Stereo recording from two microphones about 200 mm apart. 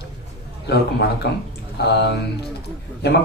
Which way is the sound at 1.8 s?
55° left (ahead or behind).